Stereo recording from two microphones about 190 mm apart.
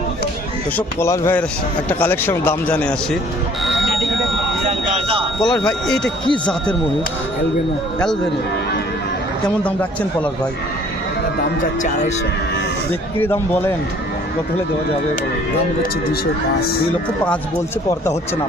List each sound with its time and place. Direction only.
0.8 s a man's voice: 15° left (ahead or behind)
4.9 s a sound: 30° right (ahead or behind)
5.6 s speech: 5° left (ahead or behind)
11.6 s speech: 40° left (ahead or behind)
13.1 s a man's voice: 10° left (ahead or behind)